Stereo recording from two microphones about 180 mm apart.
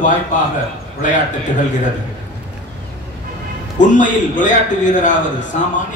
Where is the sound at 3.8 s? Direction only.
45° left (ahead or behind).